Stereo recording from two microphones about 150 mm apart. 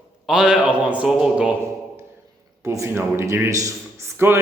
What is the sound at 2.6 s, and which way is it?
A man's voice, 20° right (ahead or behind).